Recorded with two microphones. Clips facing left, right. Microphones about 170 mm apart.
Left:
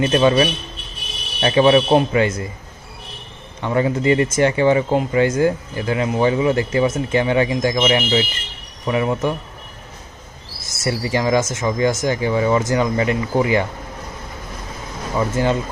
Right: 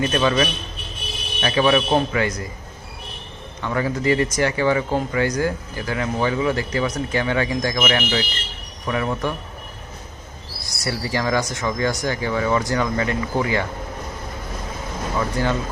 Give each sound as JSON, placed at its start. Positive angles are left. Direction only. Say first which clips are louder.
{"t": 0.0, "sound": "speech", "louder": "left 5 dB", "side_deg": 25}
{"t": 3.6, "sound": "speech", "louder": "left 4 dB", "side_deg": 25}
{"t": 10.8, "sound": "speech", "louder": "left 4 dB", "side_deg": 20}
{"t": 15.2, "sound": "speech", "louder": "left 4 dB", "side_deg": 20}